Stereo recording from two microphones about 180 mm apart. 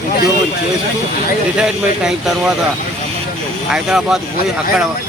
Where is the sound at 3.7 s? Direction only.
5° right (ahead or behind).